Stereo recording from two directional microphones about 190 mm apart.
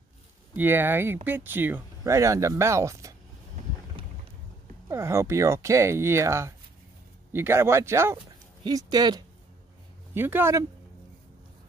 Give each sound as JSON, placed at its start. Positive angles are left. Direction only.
{"t": 0.6, "sound": "speech", "side_deg": -10}
{"t": 4.8, "sound": "speech", "side_deg": -15}